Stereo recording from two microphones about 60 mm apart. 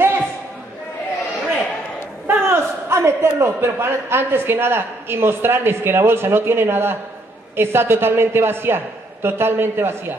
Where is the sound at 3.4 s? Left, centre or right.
Right.